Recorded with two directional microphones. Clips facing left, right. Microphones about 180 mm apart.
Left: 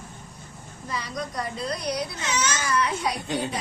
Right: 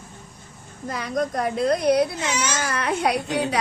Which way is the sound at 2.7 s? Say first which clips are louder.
Right 4 dB; 60° right (ahead or behind).